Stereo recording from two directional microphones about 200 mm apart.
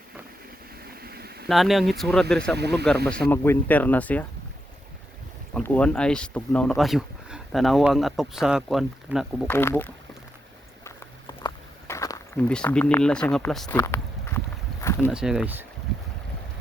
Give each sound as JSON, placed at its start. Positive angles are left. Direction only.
{"t": 1.0, "sound": "a sound", "side_deg": -50}
{"t": 1.5, "sound": "speech", "side_deg": 0}
{"t": 2.6, "sound": "speech", "side_deg": -55}
{"t": 3.1, "sound": "speech", "side_deg": 10}
{"t": 5.5, "sound": "speech", "side_deg": 5}
{"t": 9.5, "sound": "speech", "side_deg": 10}
{"t": 10.8, "sound": "a sound", "side_deg": 15}
{"t": 15.1, "sound": "speech", "side_deg": -5}